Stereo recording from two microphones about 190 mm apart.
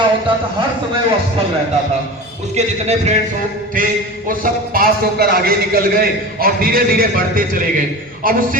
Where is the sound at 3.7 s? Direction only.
45° right (ahead or behind).